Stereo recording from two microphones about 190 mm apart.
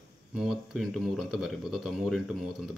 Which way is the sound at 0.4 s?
Centre (ahead or behind).